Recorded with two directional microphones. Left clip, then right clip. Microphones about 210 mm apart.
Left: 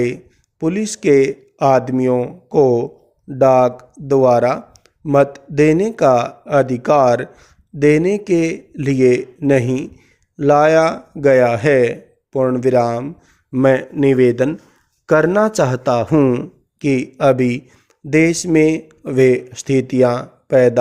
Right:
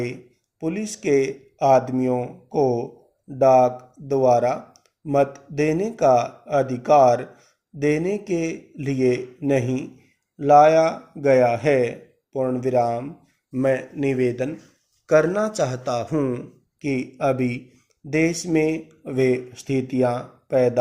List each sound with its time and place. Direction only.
0.6 s speech: 50° left (ahead or behind)